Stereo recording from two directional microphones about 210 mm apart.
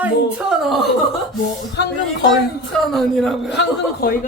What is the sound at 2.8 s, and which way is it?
Speech, centre (ahead or behind).